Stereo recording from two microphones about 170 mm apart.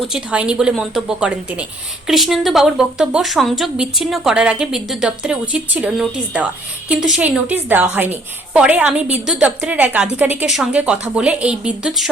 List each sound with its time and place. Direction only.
0.0 s a woman's voice: 5° right (ahead or behind)